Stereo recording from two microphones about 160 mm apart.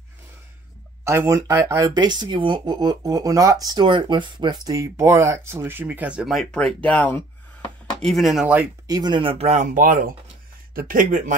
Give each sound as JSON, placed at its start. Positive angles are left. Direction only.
{"t": 1.0, "sound": "speech", "side_deg": -15}
{"t": 8.8, "sound": "speech", "side_deg": -25}